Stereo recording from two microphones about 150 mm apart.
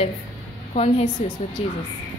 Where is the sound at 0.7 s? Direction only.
45° left (ahead or behind).